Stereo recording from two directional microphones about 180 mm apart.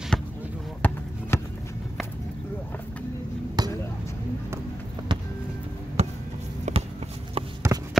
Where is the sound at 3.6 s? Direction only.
20° right (ahead or behind).